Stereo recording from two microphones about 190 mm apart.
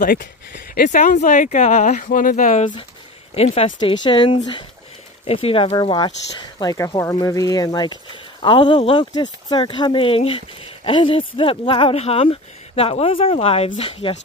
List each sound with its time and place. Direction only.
0.0 s speech: 50° left (ahead or behind); by 14.1 s 30° left (ahead or behind)